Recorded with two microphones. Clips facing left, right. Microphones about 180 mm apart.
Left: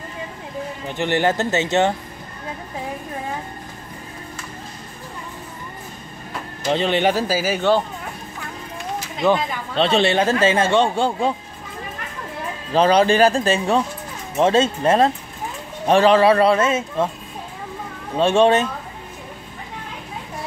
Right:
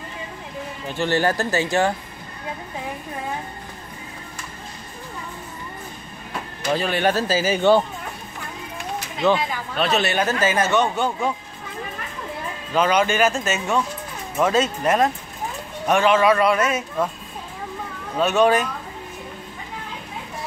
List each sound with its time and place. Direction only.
0.8 s speech: 20° left (ahead or behind)
6.7 s speech: 25° left (ahead or behind); by 7.8 s centre (ahead or behind)
9.8 s speech: 30° left (ahead or behind)
12.7 s speech: 35° left (ahead or behind)
18.1 s speech: 30° left (ahead or behind)